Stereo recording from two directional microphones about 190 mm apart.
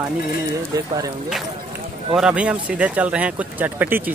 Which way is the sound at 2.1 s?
5° right (ahead or behind).